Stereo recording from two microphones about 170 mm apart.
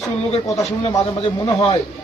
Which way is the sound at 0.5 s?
20° left (ahead or behind).